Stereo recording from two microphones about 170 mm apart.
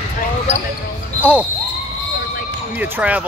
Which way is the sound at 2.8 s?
10° right (ahead or behind).